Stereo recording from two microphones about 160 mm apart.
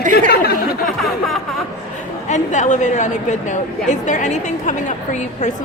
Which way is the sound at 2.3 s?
50° left (ahead or behind).